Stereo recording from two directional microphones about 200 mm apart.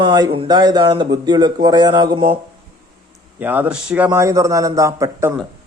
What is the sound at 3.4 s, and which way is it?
A man's voice, 10° right (ahead or behind).